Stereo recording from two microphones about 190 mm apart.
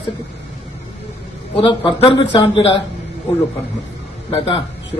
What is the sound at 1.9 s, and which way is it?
Speech, 25° left (ahead or behind).